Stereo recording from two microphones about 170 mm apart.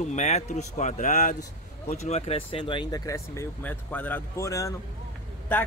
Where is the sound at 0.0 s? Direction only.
45° left (ahead or behind).